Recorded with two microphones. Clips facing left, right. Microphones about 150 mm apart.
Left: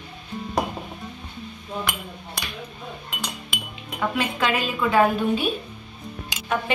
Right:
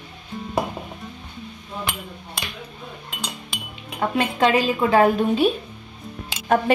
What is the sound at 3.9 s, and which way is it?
A woman's voice, 35° right (ahead or behind).